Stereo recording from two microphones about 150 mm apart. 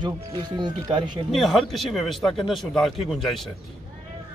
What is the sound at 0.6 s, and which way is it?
Speech, 30° right (ahead or behind).